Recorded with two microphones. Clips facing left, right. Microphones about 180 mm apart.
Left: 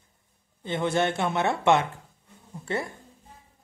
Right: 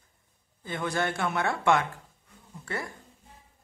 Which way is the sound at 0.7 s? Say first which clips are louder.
Left 5 dB; 25° left (ahead or behind).